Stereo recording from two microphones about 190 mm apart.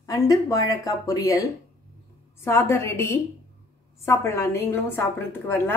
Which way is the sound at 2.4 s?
15° left (ahead or behind).